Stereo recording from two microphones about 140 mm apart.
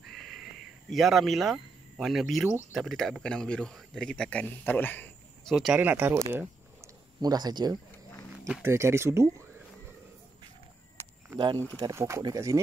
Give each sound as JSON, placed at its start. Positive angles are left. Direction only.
{"t": 0.0, "sound": "crow", "side_deg": 0}
{"t": 2.7, "sound": "speech", "side_deg": 0}
{"t": 5.5, "sound": "speech", "side_deg": 0}
{"t": 5.8, "sound": "speech", "side_deg": -15}
{"t": 6.3, "sound": "a sound", "side_deg": -20}
{"t": 7.2, "sound": "speech", "side_deg": -30}
{"t": 7.9, "sound": "wild animals", "side_deg": 15}
{"t": 8.6, "sound": "speech", "side_deg": -20}
{"t": 11.3, "sound": "speech", "side_deg": -30}
{"t": 11.8, "sound": "speech", "side_deg": -20}